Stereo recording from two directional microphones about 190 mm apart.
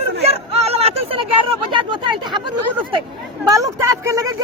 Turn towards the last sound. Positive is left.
turn(degrees=-15)  # may be behind; listen again after turning